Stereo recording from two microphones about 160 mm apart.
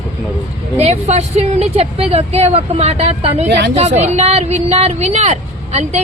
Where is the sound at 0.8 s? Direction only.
40° right (ahead or behind).